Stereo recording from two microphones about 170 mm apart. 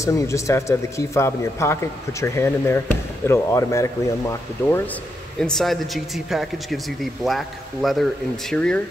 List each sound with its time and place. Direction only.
0.0 s speech: 20° left (ahead or behind)
5.4 s speech: centre (ahead or behind)